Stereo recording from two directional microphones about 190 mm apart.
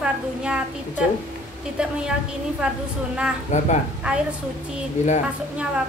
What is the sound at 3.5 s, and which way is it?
Speech, 40° left (ahead or behind).